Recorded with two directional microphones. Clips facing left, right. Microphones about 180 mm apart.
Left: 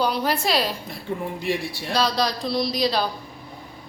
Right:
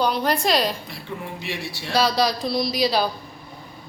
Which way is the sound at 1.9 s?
5° right (ahead or behind).